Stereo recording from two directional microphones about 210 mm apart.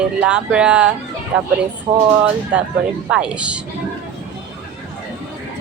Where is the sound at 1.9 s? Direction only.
25° right (ahead or behind).